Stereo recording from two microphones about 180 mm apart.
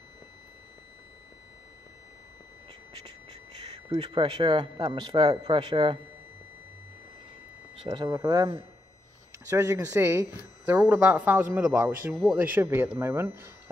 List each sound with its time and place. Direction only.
3.9 s speech: 25° right (ahead or behind)
7.8 s speech: 25° right (ahead or behind)
9.5 s speech: 15° right (ahead or behind)